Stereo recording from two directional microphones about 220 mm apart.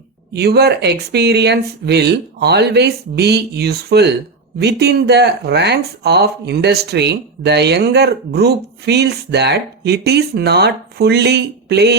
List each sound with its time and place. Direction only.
0.3 s speech: 50° right (ahead or behind)